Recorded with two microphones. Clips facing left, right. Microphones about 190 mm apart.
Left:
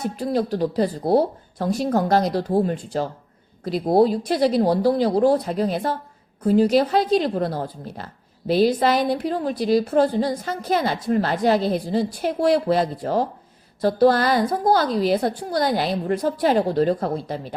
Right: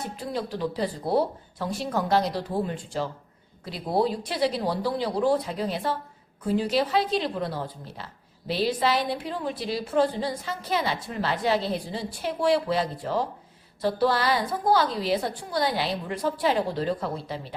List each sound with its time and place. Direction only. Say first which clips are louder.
0.2 s a woman's voice: left 8 dB; 40° left (ahead or behind)